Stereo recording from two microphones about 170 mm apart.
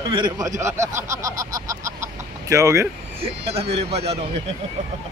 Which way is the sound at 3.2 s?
35° right (ahead or behind).